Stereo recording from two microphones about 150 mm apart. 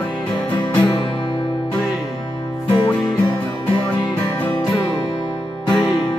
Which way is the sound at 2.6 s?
30° left (ahead or behind).